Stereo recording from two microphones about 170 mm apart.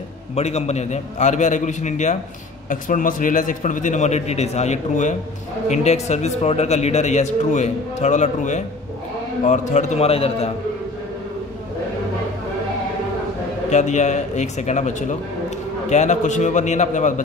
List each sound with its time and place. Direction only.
0.3 s a man's voice: 40° left (ahead or behind)
13.7 s a man's voice: 45° left (ahead or behind)